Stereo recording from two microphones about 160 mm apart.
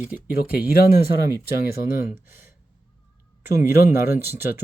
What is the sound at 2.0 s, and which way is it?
Speech, 15° right (ahead or behind).